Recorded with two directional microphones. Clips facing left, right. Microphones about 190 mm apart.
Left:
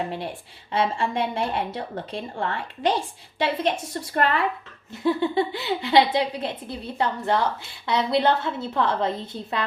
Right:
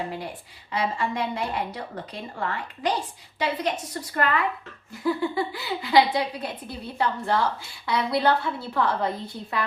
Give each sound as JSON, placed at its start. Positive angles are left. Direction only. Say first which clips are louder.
{"t": 0.7, "sound": "speech", "louder": "left 3 dB", "side_deg": 25}